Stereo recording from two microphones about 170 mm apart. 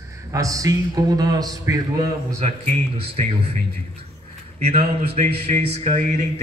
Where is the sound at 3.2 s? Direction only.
45° right (ahead or behind).